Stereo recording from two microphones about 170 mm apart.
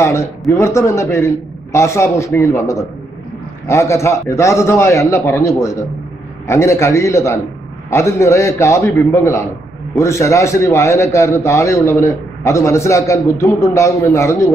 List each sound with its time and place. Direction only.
0.0 s a man's voice: 15° left (ahead or behind)